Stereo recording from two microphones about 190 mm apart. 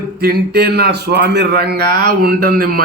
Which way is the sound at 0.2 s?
55° right (ahead or behind).